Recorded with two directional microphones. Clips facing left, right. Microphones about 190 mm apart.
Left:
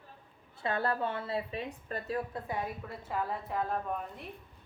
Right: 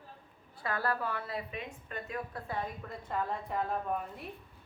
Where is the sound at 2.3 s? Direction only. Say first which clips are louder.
Left 2 dB; 10° left (ahead or behind).